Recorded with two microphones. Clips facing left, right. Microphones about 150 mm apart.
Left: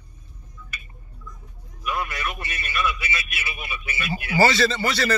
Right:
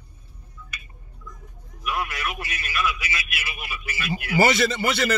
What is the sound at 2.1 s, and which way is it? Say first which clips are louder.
Speech: even; centre (ahead or behind).